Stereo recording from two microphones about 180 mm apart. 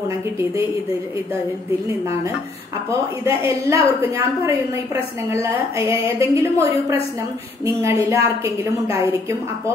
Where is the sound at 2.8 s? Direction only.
15° right (ahead or behind).